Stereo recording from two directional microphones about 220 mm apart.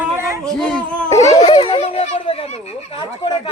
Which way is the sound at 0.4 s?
5° left (ahead or behind).